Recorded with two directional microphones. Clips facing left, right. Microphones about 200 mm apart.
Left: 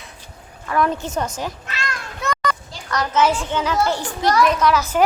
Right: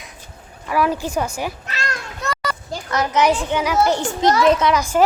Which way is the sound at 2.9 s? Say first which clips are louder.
Right 1 dB; 20° right (ahead or behind).